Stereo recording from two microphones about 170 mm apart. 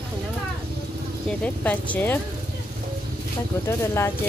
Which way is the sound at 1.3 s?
10° left (ahead or behind).